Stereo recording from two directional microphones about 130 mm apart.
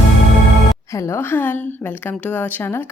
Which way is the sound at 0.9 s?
20° left (ahead or behind).